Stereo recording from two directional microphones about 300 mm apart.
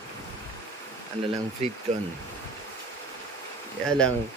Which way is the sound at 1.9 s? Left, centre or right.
Right.